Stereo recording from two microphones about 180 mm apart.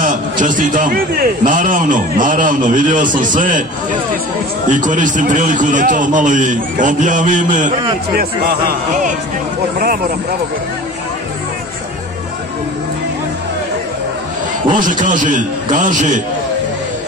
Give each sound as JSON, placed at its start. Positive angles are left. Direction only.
{"t": 0.0, "sound": "a man's voice", "side_deg": -45}
{"t": 4.6, "sound": "a man's voice", "side_deg": -45}
{"t": 8.2, "sound": "a man's voice", "side_deg": -60}
{"t": 14.8, "sound": "a man's voice", "side_deg": -45}